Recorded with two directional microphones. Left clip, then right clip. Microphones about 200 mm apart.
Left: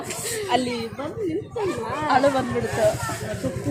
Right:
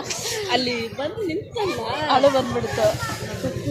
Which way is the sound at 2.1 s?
5° right (ahead or behind).